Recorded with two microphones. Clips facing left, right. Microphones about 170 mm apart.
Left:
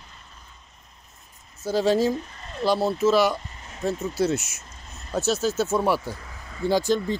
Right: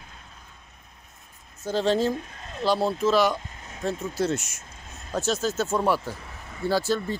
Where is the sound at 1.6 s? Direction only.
10° left (ahead or behind).